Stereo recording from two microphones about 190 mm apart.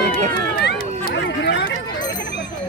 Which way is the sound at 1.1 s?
65° left (ahead or behind).